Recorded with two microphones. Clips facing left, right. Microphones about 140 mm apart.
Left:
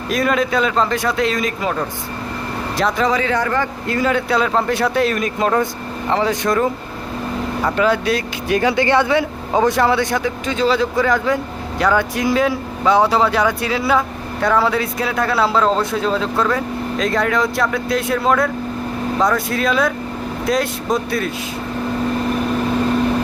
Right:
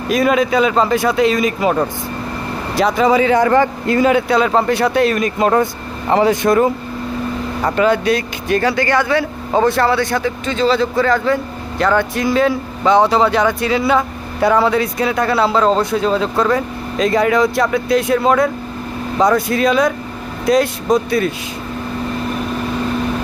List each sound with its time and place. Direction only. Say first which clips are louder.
0.1 s speech: right 4 dB; centre (ahead or behind)
2.7 s speech: right 5 dB; 5° right (ahead or behind); by 4.2 s 20° right (ahead or behind)
4.3 s a man's voice: right 3 dB; centre (ahead or behind)